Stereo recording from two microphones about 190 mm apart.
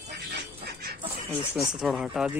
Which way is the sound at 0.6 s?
55° right (ahead or behind).